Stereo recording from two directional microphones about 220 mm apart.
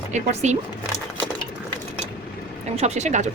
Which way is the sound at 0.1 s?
30° right (ahead or behind).